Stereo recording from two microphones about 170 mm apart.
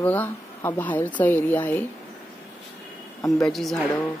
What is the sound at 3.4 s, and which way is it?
Speech, centre (ahead or behind).